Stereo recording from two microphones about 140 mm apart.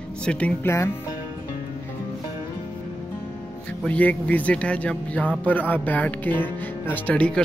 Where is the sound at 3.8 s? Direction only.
10° left (ahead or behind).